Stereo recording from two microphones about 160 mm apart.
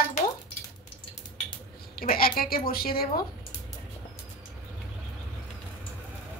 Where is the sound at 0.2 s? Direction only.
45° left (ahead or behind).